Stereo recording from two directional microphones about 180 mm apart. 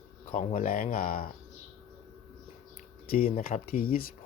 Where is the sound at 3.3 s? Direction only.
50° left (ahead or behind).